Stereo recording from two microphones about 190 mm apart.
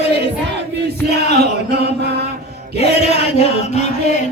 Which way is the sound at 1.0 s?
60° right (ahead or behind).